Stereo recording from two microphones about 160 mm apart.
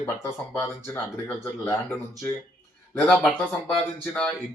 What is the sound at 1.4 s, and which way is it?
Speech, 15° left (ahead or behind).